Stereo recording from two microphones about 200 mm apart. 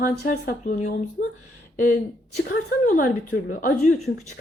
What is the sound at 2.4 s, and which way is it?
A woman's voice, 45° left (ahead or behind).